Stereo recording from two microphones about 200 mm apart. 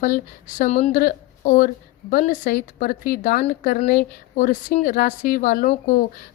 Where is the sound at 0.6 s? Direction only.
40° left (ahead or behind).